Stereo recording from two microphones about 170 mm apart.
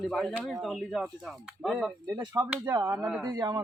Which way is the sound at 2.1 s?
20° right (ahead or behind).